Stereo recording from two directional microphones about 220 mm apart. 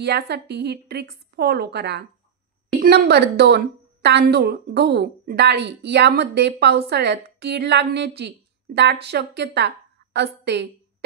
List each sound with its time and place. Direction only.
0.0 s a woman's voice: 50° right (ahead or behind)